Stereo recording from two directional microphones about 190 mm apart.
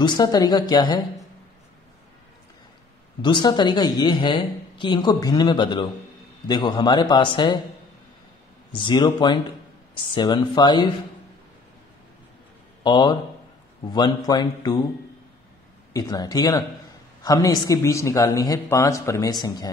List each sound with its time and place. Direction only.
0.0 s a woman's voice: 20° left (ahead or behind)
3.2 s a woman's voice: 25° left (ahead or behind)
8.7 s a woman's voice: 25° left (ahead or behind)
12.8 s a woman's voice: 25° left (ahead or behind)
15.9 s a woman's voice: 20° left (ahead or behind)